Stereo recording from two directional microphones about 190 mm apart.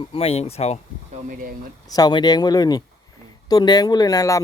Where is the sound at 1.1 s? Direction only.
45° right (ahead or behind).